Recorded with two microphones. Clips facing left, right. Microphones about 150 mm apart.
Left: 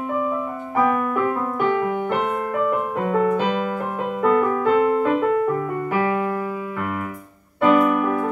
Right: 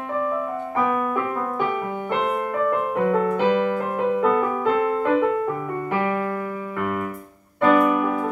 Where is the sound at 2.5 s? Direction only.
15° left (ahead or behind).